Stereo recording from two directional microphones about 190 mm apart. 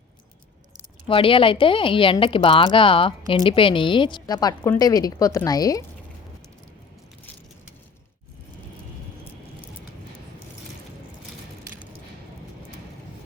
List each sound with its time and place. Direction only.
1.0 s speech: 30° left (ahead or behind)